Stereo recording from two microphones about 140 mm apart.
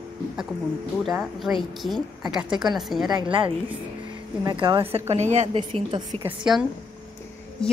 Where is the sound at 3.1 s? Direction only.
35° right (ahead or behind); by 5.4 s 55° right (ahead or behind).